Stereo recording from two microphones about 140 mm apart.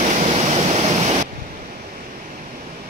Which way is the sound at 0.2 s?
50° right (ahead or behind).